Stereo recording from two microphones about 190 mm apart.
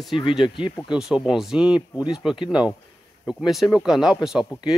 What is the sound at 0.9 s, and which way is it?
Speech, 5° right (ahead or behind).